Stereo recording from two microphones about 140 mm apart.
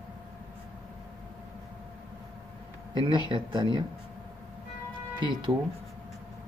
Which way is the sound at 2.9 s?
35° right (ahead or behind).